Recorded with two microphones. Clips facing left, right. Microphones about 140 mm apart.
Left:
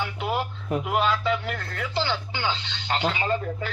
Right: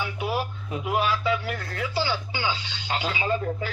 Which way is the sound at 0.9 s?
5° right (ahead or behind).